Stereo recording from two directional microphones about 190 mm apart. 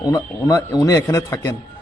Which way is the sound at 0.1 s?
20° left (ahead or behind).